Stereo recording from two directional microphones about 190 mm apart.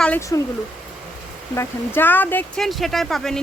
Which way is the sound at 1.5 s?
10° left (ahead or behind).